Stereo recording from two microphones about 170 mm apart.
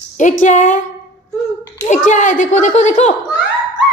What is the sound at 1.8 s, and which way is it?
A child's voice, 45° left (ahead or behind).